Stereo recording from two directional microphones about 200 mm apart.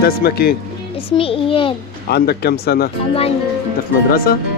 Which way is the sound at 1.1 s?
25° left (ahead or behind).